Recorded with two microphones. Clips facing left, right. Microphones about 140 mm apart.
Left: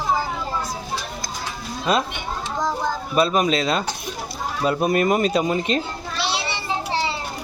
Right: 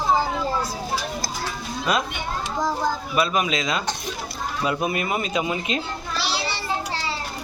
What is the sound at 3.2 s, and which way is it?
Speech, 35° left (ahead or behind).